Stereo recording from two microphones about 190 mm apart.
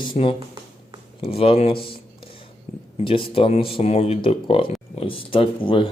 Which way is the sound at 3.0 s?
30° left (ahead or behind).